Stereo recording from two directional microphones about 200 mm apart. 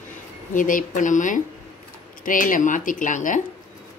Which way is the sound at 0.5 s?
40° left (ahead or behind).